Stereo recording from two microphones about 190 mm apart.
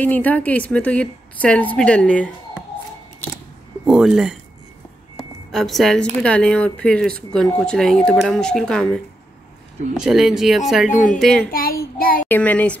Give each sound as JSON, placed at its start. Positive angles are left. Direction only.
{"t": 0.0, "sound": "a woman's voice", "side_deg": 10}
{"t": 3.8, "sound": "speech", "side_deg": -5}
{"t": 5.1, "sound": "a sound", "side_deg": 0}
{"t": 6.2, "sound": "speech", "side_deg": 5}
{"t": 10.9, "sound": "speech", "side_deg": 45}
{"t": 11.1, "sound": "speech", "side_deg": 5}
{"t": 11.5, "sound": "child singing", "side_deg": 50}
{"t": 12.3, "sound": "a woman's voice", "side_deg": 10}